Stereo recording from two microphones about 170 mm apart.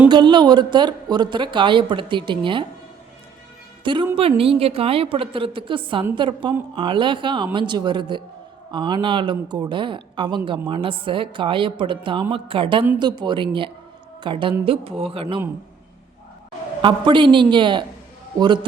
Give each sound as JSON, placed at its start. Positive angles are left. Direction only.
{"t": 0.1, "sound": "a woman's voice", "side_deg": -25}
{"t": 3.9, "sound": "a woman's voice", "side_deg": -30}
{"t": 16.8, "sound": "a woman's voice", "side_deg": -30}